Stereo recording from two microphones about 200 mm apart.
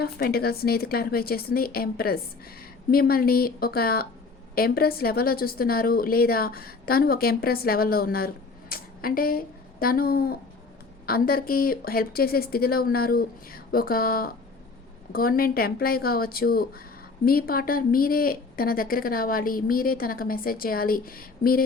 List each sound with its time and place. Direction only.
0.0 s a woman's voice: 50° left (ahead or behind)
8.7 s a sound: 45° left (ahead or behind)
9.8 s a woman's voice: 50° left (ahead or behind)